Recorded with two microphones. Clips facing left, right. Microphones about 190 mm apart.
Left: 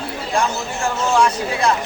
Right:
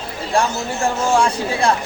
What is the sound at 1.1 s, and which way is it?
Speech, 30° right (ahead or behind).